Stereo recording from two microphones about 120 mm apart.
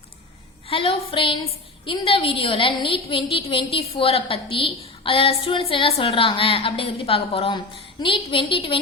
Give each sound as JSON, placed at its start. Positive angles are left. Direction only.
{"t": 0.7, "sound": "a woman's voice", "side_deg": 45}